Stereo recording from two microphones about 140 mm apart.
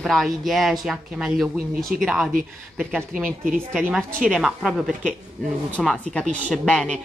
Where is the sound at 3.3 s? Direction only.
90° right.